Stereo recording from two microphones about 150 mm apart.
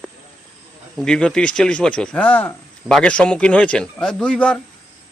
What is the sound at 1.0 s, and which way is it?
A man's voice, 5° left (ahead or behind).